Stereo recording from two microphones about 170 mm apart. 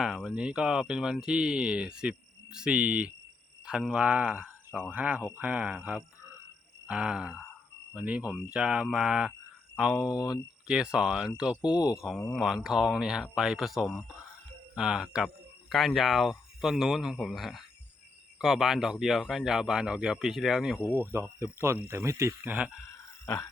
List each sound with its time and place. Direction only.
0.0 s speech: centre (ahead or behind)
10.1 s speech: 20° left (ahead or behind)
10.7 s speech: 5° right (ahead or behind)
11.6 s speech: 25° left (ahead or behind)
11.9 s speech: centre (ahead or behind)
21.0 s speech: 15° right (ahead or behind)
23.2 s a sound: 10° left (ahead or behind)